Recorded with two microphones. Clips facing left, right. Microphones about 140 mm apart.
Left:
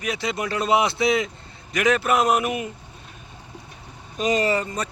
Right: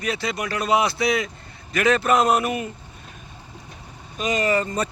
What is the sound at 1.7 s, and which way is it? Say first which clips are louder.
Speech: right 1 dB; 10° left (ahead or behind).